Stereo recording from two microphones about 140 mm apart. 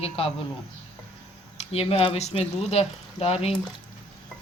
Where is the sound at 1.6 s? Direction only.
45° left (ahead or behind).